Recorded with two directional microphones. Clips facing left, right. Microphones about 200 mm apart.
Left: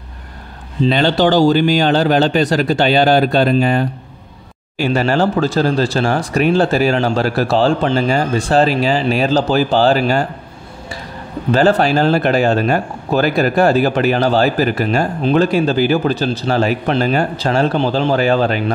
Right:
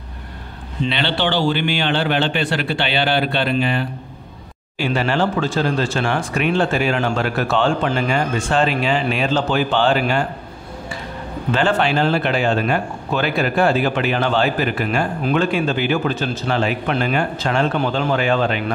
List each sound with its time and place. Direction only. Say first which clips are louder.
0.8 s speech: left 8 dB; 40° left (ahead or behind)
11.5 s speech: left 5 dB; 40° left (ahead or behind)